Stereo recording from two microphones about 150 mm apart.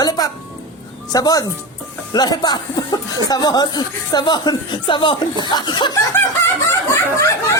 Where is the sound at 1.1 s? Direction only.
25° left (ahead or behind).